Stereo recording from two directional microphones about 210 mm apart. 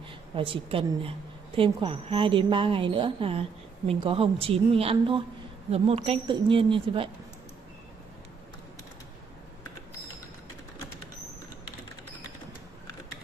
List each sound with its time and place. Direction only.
0.4 s a woman's voice: 25° right (ahead or behind)